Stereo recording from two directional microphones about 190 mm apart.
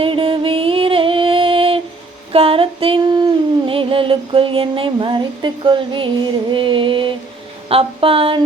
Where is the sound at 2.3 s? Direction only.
30° right (ahead or behind).